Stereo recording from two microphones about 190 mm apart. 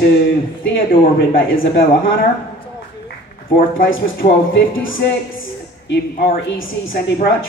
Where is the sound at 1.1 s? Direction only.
90° left.